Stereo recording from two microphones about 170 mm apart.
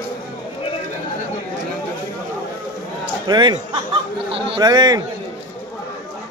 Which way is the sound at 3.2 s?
25° right (ahead or behind).